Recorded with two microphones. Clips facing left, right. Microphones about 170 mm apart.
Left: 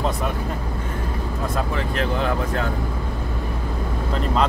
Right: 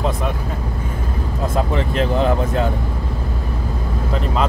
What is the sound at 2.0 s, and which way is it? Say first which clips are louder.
Speech: right 5 dB; 20° right (ahead or behind).